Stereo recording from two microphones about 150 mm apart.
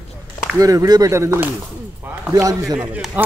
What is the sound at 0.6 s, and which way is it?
Speech, 25° right (ahead or behind).